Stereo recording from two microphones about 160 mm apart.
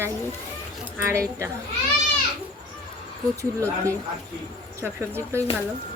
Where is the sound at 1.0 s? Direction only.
15° right (ahead or behind).